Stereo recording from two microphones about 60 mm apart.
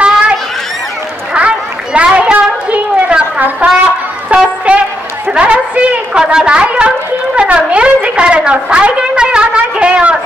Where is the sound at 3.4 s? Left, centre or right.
Right.